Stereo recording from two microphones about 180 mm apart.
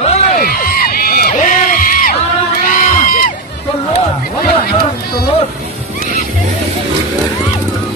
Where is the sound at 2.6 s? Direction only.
50° left (ahead or behind).